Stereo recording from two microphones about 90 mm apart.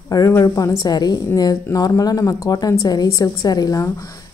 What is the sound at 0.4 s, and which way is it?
A woman's voice, 40° left (ahead or behind).